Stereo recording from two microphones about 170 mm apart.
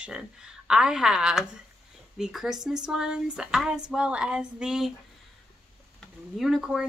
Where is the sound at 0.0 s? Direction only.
5° right (ahead or behind).